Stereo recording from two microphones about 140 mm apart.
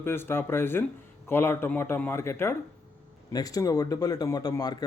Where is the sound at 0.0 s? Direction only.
15° left (ahead or behind).